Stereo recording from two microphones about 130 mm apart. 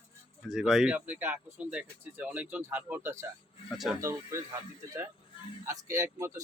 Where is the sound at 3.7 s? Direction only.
Centre (ahead or behind).